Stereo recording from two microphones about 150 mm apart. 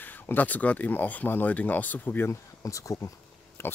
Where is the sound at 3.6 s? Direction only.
15° left (ahead or behind).